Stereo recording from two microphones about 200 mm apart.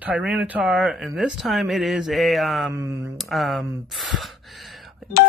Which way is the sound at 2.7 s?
15° right (ahead or behind).